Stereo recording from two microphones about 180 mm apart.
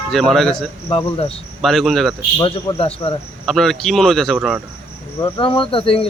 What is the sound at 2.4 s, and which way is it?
Speech, 30° left (ahead or behind).